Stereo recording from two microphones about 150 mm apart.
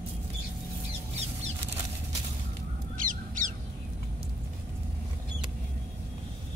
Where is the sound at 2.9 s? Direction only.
60° right (ahead or behind).